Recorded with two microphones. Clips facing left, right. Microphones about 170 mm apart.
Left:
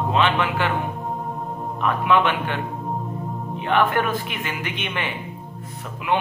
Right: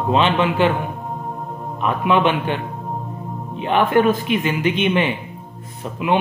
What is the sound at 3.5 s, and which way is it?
Speech, 20° right (ahead or behind).